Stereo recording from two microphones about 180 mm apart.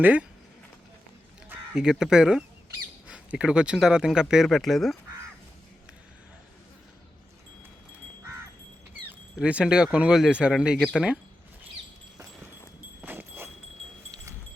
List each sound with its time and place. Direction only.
0.0 s speech: 10° right (ahead or behind)
1.5 s speech: 5° right (ahead or behind)
9.0 s speech: 5° right (ahead or behind)
13.0 s a sound: 10° right (ahead or behind)